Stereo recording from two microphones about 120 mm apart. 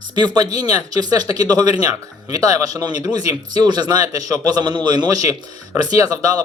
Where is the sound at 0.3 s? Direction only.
35° right (ahead or behind).